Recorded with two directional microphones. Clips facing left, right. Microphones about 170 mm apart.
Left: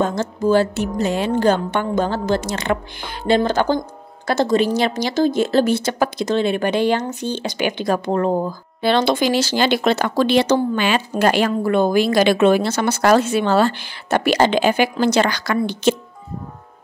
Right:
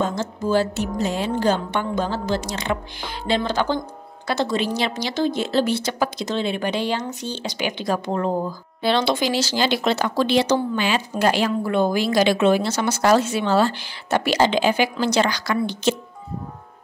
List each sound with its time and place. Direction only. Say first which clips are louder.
0.0 s speech: left 4 dB; 55° left (ahead or behind)